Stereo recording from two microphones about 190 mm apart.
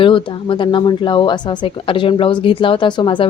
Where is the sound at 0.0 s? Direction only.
25° left (ahead or behind).